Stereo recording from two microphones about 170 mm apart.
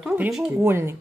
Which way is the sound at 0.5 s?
15° right (ahead or behind).